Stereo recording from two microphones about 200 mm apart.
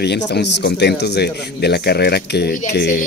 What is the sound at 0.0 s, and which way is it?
Speech, 55° left (ahead or behind).